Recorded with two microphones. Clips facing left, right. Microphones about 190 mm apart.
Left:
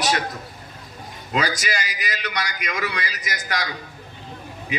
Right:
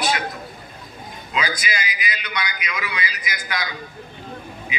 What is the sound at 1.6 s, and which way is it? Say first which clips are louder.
A man's voice: even; 40° left (ahead or behind).